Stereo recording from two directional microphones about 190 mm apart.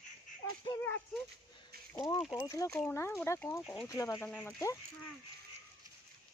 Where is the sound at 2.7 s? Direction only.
5° left (ahead or behind).